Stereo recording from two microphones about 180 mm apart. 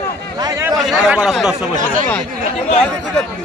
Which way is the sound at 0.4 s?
20° right (ahead or behind).